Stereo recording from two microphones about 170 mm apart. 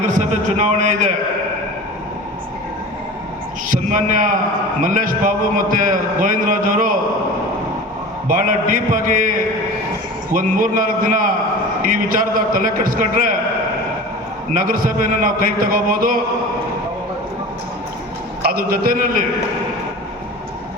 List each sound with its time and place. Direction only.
0.1 s a man's voice: 45° right (ahead or behind)
3.7 s a man's voice: 50° right (ahead or behind)
8.3 s a man's voice: 50° right (ahead or behind)
14.5 s a man's voice: 55° right (ahead or behind)
18.4 s a man's voice: 60° right (ahead or behind)